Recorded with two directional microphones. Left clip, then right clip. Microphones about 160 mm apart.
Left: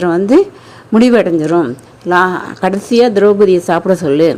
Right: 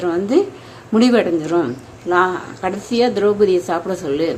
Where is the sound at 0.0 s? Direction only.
40° left (ahead or behind).